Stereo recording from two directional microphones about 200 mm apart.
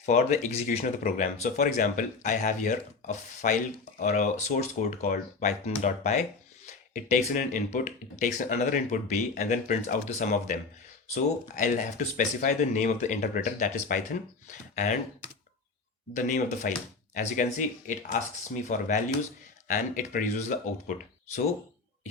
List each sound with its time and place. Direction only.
0.0 s speech: 35° left (ahead or behind)
16.1 s speech: 40° left (ahead or behind)